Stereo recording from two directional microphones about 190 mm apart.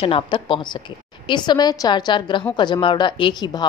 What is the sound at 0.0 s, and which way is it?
A woman's voice, 25° left (ahead or behind).